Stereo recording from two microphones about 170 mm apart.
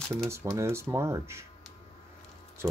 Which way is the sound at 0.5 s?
15° right (ahead or behind).